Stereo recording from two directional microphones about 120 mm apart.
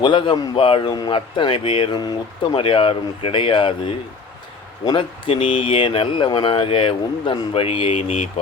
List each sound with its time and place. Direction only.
0.0 s a man's voice: 45° left (ahead or behind)
4.9 s a man's voice: 45° left (ahead or behind)